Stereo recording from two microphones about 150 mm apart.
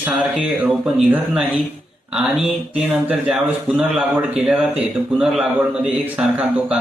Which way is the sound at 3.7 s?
10° right (ahead or behind).